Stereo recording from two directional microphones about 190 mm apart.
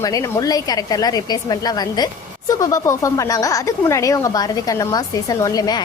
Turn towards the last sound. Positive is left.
turn(degrees=20)  # may be behind; listen again after turning